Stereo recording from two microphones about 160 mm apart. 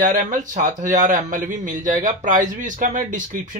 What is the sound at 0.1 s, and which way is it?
Speech, 50° right (ahead or behind).